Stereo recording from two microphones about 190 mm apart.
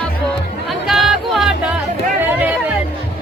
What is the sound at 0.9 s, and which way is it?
Music, centre (ahead or behind).